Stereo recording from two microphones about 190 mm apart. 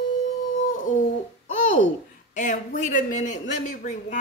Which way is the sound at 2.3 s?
40° left (ahead or behind).